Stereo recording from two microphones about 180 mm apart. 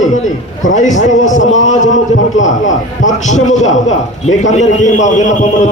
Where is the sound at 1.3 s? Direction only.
90° left.